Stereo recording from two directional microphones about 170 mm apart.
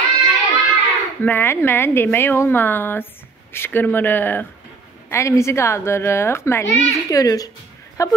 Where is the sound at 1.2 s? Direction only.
15° left (ahead or behind).